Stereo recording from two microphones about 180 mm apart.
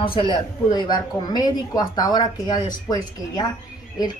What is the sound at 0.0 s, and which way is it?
Speech, 25° left (ahead or behind).